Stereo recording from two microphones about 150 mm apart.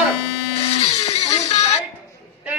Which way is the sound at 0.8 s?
40° left (ahead or behind).